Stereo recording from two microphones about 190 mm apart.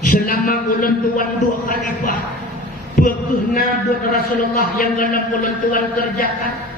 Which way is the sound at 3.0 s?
45° left (ahead or behind).